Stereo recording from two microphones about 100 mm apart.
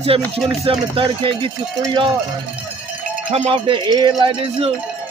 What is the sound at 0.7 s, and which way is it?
Cowbell, 60° right (ahead or behind).